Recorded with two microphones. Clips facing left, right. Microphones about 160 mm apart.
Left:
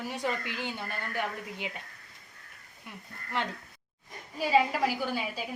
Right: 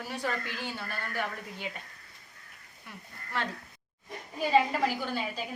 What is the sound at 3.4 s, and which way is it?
Speech, 20° left (ahead or behind).